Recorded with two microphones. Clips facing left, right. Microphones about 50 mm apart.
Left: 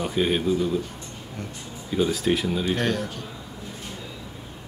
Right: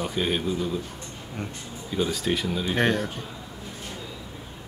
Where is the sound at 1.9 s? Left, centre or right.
Centre.